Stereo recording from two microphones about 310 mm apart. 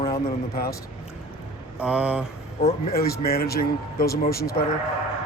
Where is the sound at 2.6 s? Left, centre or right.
Left.